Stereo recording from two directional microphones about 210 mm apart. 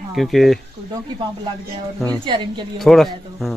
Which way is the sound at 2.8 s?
Centre (ahead or behind).